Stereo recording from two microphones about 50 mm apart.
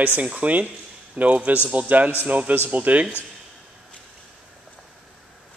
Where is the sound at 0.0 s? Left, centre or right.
Right.